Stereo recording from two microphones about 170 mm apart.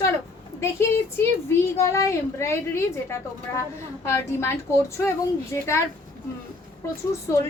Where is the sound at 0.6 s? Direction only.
15° left (ahead or behind).